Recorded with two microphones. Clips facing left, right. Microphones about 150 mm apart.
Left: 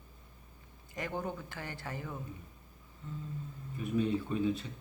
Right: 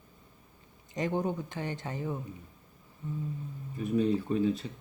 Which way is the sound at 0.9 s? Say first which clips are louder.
Right 7 dB; 20° right (ahead or behind).